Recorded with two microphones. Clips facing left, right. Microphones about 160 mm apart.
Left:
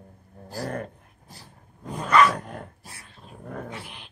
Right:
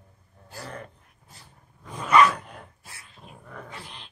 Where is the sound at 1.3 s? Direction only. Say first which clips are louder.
Left 3 dB; 35° left (ahead or behind).